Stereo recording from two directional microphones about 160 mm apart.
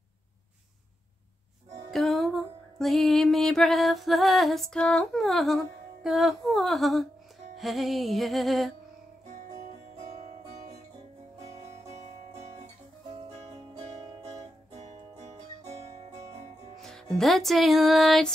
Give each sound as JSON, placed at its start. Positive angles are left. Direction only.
{"t": 1.9, "sound": "music", "side_deg": 0}
{"t": 9.9, "sound": "music", "side_deg": -45}
{"t": 11.4, "sound": "music", "side_deg": -20}
{"t": 13.4, "sound": "music", "side_deg": -40}
{"t": 15.6, "sound": "music", "side_deg": -20}
{"t": 16.7, "sound": "music", "side_deg": 0}